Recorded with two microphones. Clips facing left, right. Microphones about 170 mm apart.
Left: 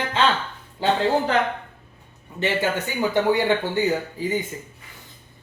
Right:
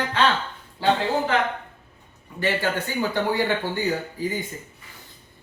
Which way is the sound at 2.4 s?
20° left (ahead or behind).